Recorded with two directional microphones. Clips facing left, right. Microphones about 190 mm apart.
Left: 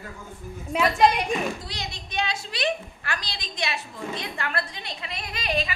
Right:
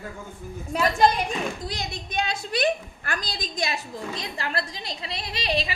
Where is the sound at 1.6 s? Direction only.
45° right (ahead or behind).